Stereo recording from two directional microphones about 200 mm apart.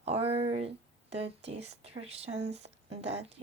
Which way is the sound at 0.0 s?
30° right (ahead or behind).